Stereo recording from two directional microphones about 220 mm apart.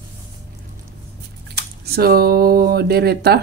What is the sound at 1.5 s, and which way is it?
Speech, 45° right (ahead or behind).